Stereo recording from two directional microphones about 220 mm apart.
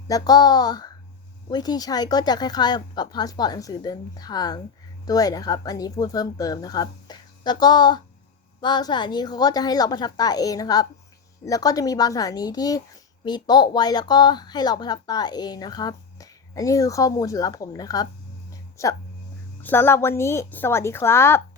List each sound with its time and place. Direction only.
0.1 s speech: 15° left (ahead or behind)